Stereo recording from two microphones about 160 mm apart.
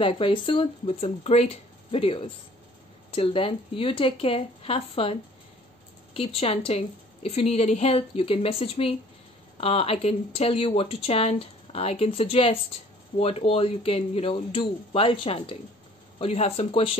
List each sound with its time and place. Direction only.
0.0 s speech: 35° left (ahead or behind)
6.1 s speech: 35° left (ahead or behind)